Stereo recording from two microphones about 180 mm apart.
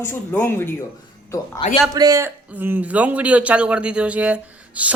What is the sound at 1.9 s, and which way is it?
A man's voice, 20° right (ahead or behind).